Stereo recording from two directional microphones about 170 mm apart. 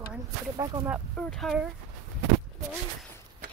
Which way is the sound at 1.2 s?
5° left (ahead or behind).